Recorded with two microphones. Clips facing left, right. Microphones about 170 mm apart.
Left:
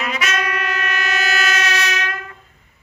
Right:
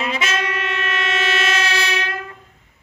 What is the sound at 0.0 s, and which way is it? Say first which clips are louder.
Music: even; 30° right (ahead or behind).